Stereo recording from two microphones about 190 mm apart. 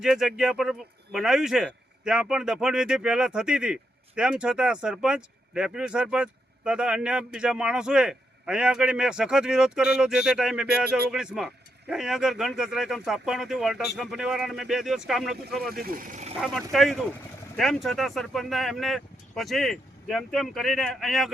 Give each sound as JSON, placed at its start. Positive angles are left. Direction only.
{"t": 0.0, "sound": "a man's voice", "side_deg": 0}
{"t": 15.7, "sound": "speech", "side_deg": -50}
{"t": 16.4, "sound": "a man's voice", "side_deg": 0}